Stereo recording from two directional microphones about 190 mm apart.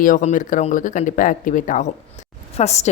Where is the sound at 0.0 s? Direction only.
40° left (ahead or behind).